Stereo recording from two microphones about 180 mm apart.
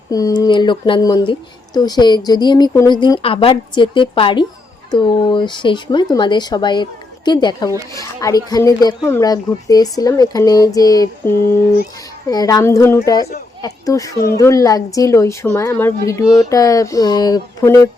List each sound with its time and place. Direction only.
0.1 s speech: 20° left (ahead or behind)
16.2 s speech: centre (ahead or behind)
16.5 s speech: 20° left (ahead or behind)